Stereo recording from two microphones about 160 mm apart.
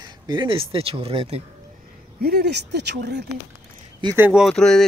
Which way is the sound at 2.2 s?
75° right (ahead or behind).